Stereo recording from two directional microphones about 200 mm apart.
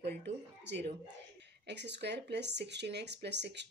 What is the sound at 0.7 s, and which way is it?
A woman's voice, 60° right (ahead or behind).